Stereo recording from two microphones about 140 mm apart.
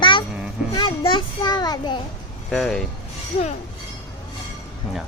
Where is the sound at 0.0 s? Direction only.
35° left (ahead or behind).